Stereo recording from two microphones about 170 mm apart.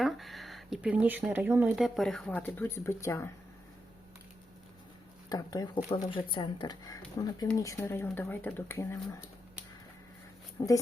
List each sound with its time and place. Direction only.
0.0 s speech: centre (ahead or behind); by 3.2 s 15° left (ahead or behind)
5.3 s speech: 20° left (ahead or behind)
10.6 s speech: 20° left (ahead or behind)